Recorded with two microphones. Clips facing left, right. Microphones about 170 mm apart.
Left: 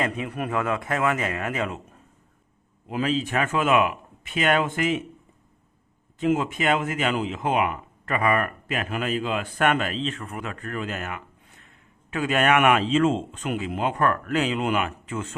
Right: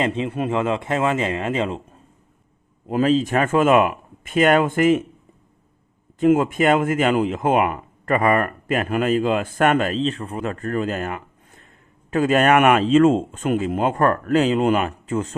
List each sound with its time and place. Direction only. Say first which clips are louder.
0.0 s speech: right 5 dB; 25° right (ahead or behind)
2.8 s a man's voice: right 7 dB; 40° right (ahead or behind)
6.1 s a man's voice: right 7 dB; 50° right (ahead or behind)